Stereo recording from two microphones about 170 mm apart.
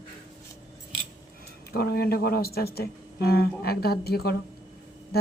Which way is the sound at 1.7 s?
70° left (ahead or behind).